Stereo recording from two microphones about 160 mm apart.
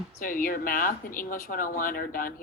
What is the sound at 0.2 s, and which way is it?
Speech, 60° left (ahead or behind).